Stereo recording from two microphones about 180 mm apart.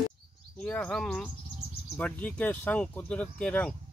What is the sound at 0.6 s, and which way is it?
Speech, 5° left (ahead or behind).